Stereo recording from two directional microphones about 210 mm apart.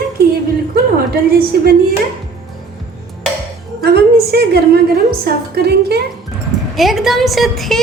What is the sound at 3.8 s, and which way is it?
A woman's voice, 50° right (ahead or behind).